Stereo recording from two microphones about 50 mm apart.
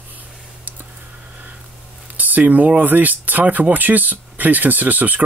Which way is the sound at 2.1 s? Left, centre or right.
Right.